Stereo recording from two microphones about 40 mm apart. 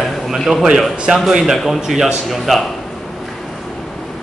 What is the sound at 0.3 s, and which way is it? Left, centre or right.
A man's voice, centre.